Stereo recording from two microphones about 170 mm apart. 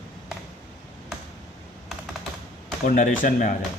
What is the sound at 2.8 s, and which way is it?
Speech, 50° left (ahead or behind).